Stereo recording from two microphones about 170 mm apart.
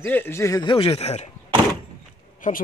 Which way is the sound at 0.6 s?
30° left (ahead or behind).